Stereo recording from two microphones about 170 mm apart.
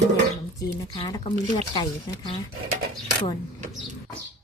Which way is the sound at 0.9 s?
25° left (ahead or behind).